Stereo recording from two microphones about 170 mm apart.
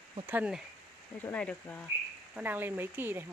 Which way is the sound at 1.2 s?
5° left (ahead or behind).